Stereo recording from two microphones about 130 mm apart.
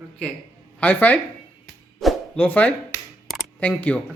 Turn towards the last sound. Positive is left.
turn(degrees=10)  # may be behind; listen again after turning